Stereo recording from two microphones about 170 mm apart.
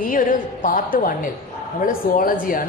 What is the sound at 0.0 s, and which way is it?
A woman's voice, 55° left (ahead or behind).